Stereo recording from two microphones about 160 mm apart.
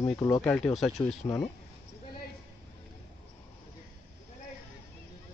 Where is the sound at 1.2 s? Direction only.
20° left (ahead or behind).